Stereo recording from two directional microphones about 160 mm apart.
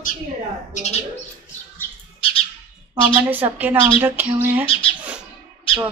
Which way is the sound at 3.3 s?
10° right (ahead or behind).